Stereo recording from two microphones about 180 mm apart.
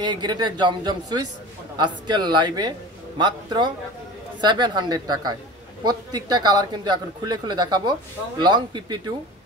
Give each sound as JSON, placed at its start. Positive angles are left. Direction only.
{"t": 0.0, "sound": "speech", "side_deg": -25}